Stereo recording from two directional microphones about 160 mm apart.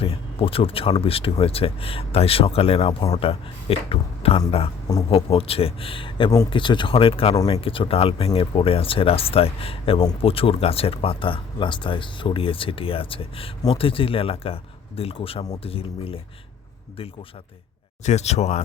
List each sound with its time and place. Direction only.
0.0 s speech: 35° left (ahead or behind)
18.0 s speech: 45° left (ahead or behind)